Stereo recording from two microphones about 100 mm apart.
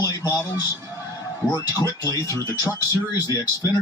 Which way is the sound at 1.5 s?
35° left (ahead or behind).